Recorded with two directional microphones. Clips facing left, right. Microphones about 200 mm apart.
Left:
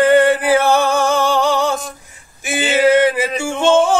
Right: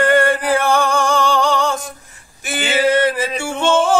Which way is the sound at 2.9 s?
10° left (ahead or behind).